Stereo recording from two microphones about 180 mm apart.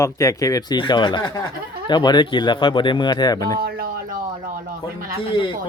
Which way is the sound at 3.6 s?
55° right (ahead or behind).